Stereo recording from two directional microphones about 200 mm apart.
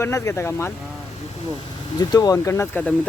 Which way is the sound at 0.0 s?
15° left (ahead or behind).